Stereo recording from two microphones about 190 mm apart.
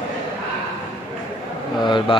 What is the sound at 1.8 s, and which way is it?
Speech, 25° left (ahead or behind).